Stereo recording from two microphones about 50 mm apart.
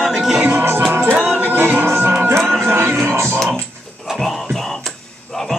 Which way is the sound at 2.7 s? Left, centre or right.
Right.